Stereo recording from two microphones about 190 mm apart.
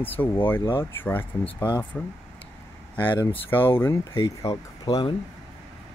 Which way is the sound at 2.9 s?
10° left (ahead or behind).